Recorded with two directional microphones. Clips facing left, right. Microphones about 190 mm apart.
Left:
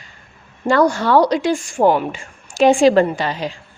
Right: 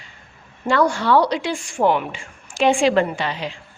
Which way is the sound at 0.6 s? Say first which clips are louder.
Left 3 dB; 40° left (ahead or behind).